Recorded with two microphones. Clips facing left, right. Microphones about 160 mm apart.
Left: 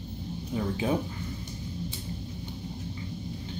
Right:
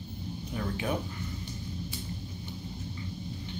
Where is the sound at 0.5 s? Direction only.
25° left (ahead or behind).